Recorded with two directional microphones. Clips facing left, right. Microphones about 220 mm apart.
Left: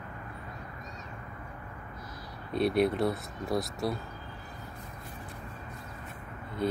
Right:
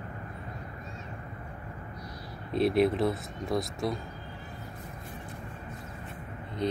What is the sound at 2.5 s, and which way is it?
Speech, centre (ahead or behind).